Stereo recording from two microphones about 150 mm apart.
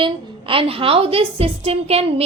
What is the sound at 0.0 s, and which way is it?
A woman's voice, 35° right (ahead or behind).